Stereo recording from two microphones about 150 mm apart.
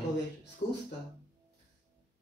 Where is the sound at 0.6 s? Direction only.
60° left (ahead or behind).